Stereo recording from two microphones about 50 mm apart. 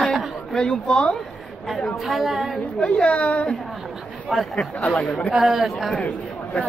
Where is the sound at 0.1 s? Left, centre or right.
Centre.